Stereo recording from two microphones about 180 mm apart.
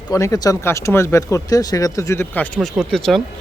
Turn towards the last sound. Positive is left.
turn(degrees=0)  # may be behind; listen again after turning